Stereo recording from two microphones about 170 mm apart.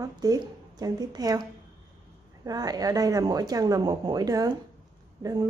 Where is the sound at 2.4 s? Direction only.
20° right (ahead or behind).